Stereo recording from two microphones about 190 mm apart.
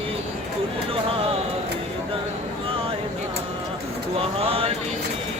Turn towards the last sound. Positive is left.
turn(degrees=-30)  # may be behind; listen again after turning